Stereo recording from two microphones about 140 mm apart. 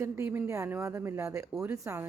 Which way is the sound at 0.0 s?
20° right (ahead or behind).